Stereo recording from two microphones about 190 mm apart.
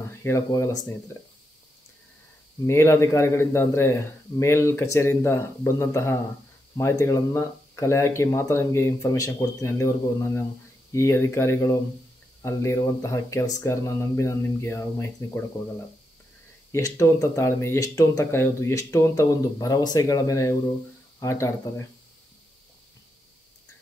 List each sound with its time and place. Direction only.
0.2 s speech: 15° left (ahead or behind)
2.6 s speech: 15° left (ahead or behind)
16.7 s speech: 15° left (ahead or behind)